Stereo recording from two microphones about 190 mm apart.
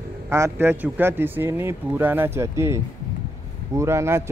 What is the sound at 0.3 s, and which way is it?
Speech, 15° right (ahead or behind).